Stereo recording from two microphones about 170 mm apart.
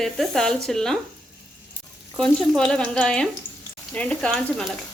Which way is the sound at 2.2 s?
5° left (ahead or behind).